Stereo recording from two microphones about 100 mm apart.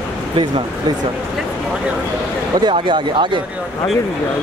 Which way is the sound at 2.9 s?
55° right (ahead or behind).